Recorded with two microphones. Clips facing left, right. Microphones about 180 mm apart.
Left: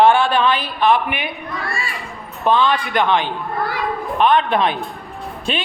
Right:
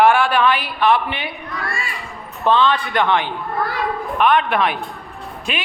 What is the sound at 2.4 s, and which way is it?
A man's voice, 15° left (ahead or behind).